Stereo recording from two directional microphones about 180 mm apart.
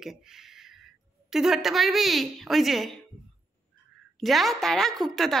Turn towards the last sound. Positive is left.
turn(degrees=0)  # may be behind; listen again after turning